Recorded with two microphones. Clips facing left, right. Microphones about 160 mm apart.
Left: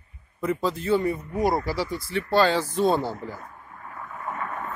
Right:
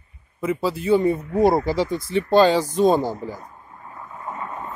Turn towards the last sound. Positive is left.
turn(degrees=-20)  # may be behind; listen again after turning